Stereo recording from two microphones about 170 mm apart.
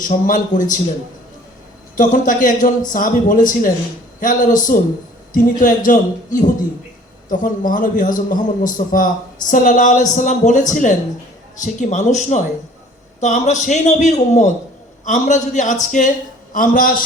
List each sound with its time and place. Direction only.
0.0 s a man's voice: 50° left (ahead or behind)
2.0 s a man's voice: 50° left (ahead or behind)